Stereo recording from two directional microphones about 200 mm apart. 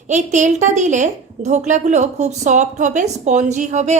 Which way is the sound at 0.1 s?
35° right (ahead or behind).